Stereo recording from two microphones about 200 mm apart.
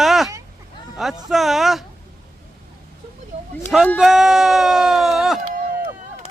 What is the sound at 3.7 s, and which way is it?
Speech, centre (ahead or behind).